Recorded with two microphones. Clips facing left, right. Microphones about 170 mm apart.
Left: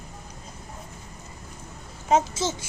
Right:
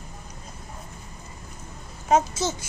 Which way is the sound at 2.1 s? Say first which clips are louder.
Right 1 dB; 25° left (ahead or behind).